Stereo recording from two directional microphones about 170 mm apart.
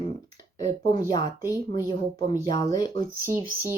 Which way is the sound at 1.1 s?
20° left (ahead or behind).